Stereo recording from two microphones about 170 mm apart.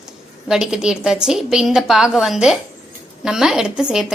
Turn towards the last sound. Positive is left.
turn(degrees=-5)  # may be behind; listen again after turning